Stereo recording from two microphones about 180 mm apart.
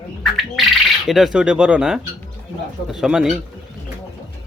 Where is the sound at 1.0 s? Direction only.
Centre (ahead or behind).